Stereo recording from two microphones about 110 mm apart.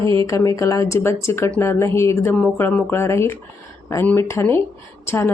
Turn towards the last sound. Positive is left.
turn(degrees=25)  # may be behind; listen again after turning